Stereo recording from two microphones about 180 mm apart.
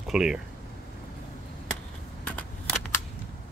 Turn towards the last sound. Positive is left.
turn(degrees=10)  # may be behind; listen again after turning